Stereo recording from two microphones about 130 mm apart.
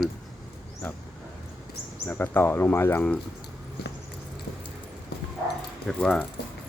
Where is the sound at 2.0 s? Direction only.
15° left (ahead or behind).